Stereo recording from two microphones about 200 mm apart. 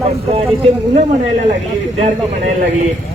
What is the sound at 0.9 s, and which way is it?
Speech, 35° right (ahead or behind).